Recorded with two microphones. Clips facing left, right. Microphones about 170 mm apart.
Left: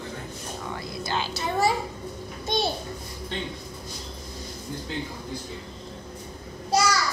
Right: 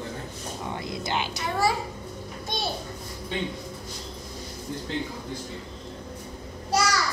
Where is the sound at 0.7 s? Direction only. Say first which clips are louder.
Right 1 dB; 20° right (ahead or behind).